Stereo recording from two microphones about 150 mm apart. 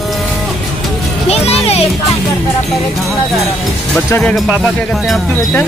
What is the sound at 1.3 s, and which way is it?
Speech, 45° left (ahead or behind).